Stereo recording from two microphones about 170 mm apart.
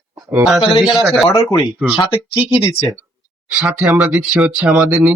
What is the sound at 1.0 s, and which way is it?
Speech, centre (ahead or behind).